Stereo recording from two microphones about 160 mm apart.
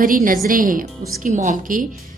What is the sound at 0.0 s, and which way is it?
A woman's voice, 60° right (ahead or behind).